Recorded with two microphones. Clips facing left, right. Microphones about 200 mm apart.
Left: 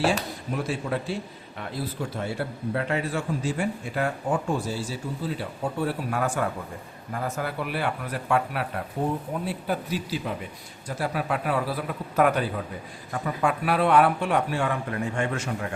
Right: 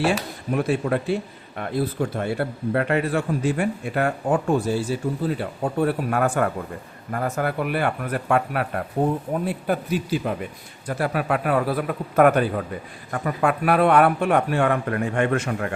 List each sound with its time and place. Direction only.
0.5 s a man's voice: 60° right (ahead or behind)